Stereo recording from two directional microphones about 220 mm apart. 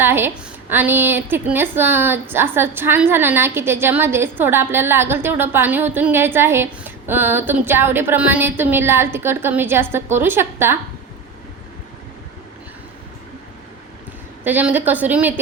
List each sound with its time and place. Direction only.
0.0 s a sound: 10° right (ahead or behind)
0.7 s a woman's voice: 10° right (ahead or behind)
14.4 s a woman's voice: 10° right (ahead or behind)